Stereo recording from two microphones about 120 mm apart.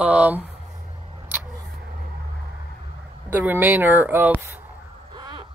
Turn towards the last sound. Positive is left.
turn(degrees=-40)  # may be behind; listen again after turning